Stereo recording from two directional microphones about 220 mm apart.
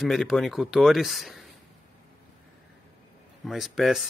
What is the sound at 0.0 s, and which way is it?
Speech, centre (ahead or behind).